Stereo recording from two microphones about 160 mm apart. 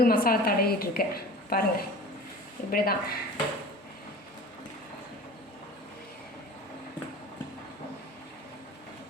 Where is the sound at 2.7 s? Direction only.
70° left (ahead or behind).